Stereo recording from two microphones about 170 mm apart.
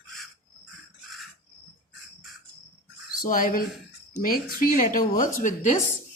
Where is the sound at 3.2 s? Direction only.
55° left (ahead or behind).